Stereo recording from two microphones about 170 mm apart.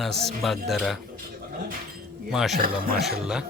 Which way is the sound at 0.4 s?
Centre (ahead or behind).